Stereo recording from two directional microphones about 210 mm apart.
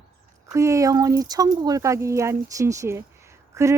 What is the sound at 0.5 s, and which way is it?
A woman's voice, 15° right (ahead or behind).